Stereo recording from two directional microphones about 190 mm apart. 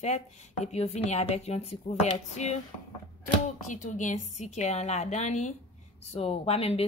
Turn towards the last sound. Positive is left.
turn(degrees=30)  # may be behind; listen again after turning